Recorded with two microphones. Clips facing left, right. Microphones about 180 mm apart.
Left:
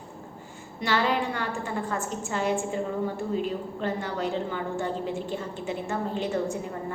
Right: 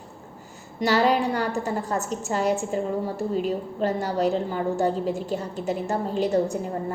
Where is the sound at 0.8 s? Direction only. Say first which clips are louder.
Right 5 dB; 40° right (ahead or behind).